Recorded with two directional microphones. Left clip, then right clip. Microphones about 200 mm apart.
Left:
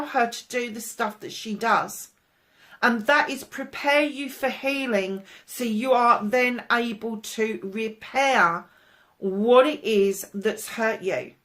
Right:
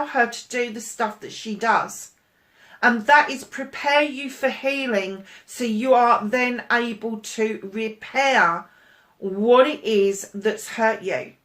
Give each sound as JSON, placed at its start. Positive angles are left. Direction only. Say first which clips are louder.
{"t": 0.1, "sound": "speech", "louder": "right 2 dB", "side_deg": 45}
{"t": 2.8, "sound": "speech", "louder": "right 5 dB", "side_deg": 45}
{"t": 9.5, "sound": "speech", "louder": "right 2 dB", "side_deg": 50}